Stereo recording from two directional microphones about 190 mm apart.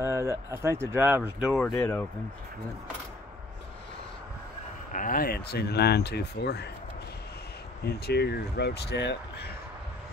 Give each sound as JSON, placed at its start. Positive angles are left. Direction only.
{"t": 0.0, "sound": "speech", "side_deg": -15}
{"t": 1.5, "sound": "speech", "side_deg": 5}
{"t": 4.9, "sound": "speech", "side_deg": 45}
{"t": 7.8, "sound": "speech", "side_deg": 55}